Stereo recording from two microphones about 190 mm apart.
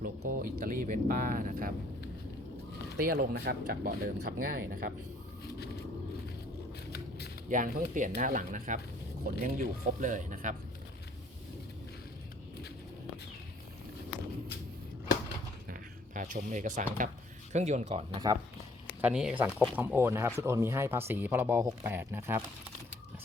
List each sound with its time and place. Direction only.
0.0 s speech: 45° right (ahead or behind)
3.0 s speech: 55° right (ahead or behind)
7.5 s speech: 45° right (ahead or behind)
15.7 s speech: 45° right (ahead or behind)
18.3 s speech: 20° right (ahead or behind)
19.0 s speech: 5° right (ahead or behind)